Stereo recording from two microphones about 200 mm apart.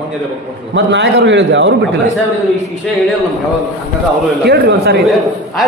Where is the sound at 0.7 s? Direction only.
65° right (ahead or behind).